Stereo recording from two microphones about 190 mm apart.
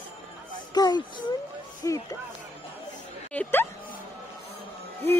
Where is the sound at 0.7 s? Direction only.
20° left (ahead or behind).